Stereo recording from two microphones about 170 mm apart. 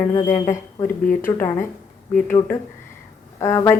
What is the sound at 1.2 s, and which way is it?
Speech, 15° left (ahead or behind).